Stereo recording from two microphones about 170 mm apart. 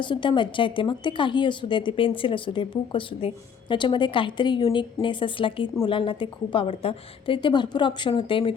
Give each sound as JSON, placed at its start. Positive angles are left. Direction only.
{"t": 0.0, "sound": "a woman's voice", "side_deg": 30}